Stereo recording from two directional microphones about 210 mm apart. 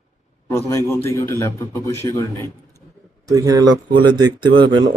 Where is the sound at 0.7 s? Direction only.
15° left (ahead or behind).